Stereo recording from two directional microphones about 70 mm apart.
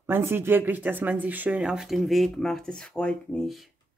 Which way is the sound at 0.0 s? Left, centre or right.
Right.